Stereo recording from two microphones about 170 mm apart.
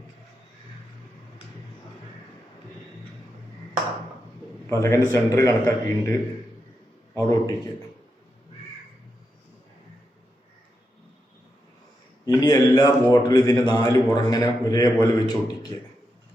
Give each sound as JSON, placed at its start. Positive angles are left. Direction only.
{"t": 4.6, "sound": "a man's voice", "side_deg": 15}
{"t": 12.2, "sound": "a man's voice", "side_deg": 25}